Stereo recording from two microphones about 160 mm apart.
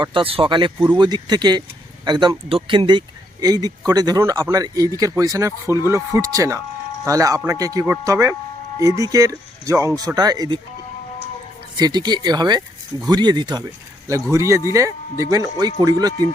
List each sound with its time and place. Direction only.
0.0 s speech: 35° right (ahead or behind)
11.8 s speech: 25° right (ahead or behind)